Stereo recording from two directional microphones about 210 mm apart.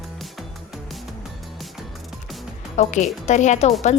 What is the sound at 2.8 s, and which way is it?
Speech, 35° left (ahead or behind).